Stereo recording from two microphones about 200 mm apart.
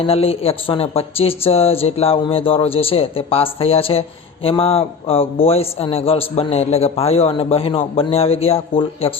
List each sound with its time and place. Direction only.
0.0 s a man's voice: 30° left (ahead or behind)